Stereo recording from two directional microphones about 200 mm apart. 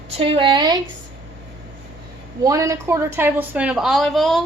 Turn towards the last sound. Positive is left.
turn(degrees=0)  # may be behind; listen again after turning